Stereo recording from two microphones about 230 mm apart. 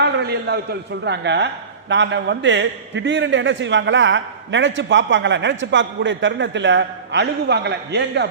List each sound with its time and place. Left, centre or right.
0.0 s a man's voice: right